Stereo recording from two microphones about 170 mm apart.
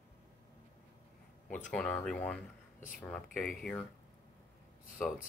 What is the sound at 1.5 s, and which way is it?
Speech, 5° left (ahead or behind).